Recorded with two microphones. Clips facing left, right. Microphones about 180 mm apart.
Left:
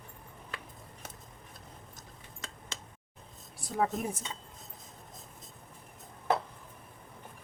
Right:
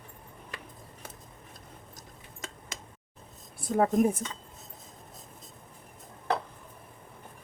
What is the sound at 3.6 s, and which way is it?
Speech, 50° right (ahead or behind).